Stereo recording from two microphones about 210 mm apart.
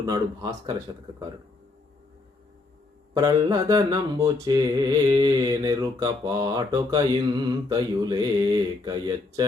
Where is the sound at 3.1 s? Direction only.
15° right (ahead or behind).